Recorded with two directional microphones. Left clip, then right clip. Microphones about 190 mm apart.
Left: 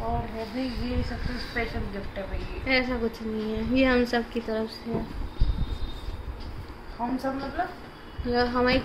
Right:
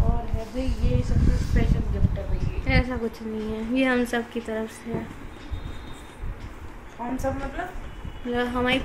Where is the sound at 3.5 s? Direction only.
5° right (ahead or behind).